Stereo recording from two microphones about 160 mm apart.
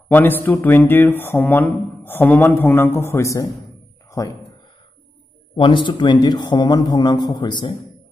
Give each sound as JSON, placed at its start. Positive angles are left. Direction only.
{"t": 0.1, "sound": "speech", "side_deg": 10}
{"t": 5.6, "sound": "a man's voice", "side_deg": 30}